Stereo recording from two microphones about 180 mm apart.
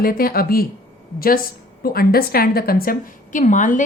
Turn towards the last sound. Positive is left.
turn(degrees=45)  # may be behind; listen again after turning